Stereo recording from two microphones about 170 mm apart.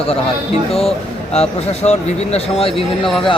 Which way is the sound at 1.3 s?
40° left (ahead or behind).